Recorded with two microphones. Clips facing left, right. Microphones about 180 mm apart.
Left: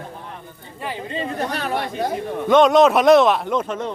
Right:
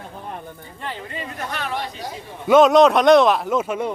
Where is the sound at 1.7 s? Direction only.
55° left (ahead or behind).